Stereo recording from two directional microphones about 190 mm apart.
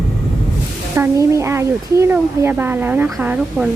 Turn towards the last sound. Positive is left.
turn(degrees=-5)  # may be behind; listen again after turning